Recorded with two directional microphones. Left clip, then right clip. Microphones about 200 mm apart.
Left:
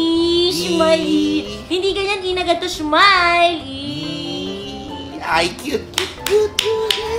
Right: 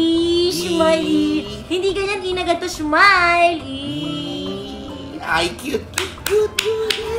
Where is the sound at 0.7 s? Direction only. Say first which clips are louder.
Left 1 dB; 10° left (ahead or behind).